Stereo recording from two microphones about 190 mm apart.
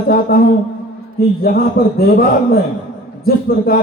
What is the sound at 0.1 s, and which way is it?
A man's voice, 50° left (ahead or behind).